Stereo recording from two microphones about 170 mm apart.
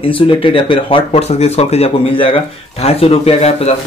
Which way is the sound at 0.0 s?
30° left (ahead or behind).